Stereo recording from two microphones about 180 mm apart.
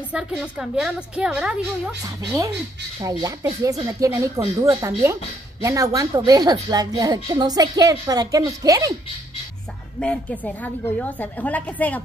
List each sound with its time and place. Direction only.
0.4 s a woman's voice: centre (ahead or behind)
2.2 s speech: 20° right (ahead or behind)
9.9 s a woman's voice: 5° left (ahead or behind)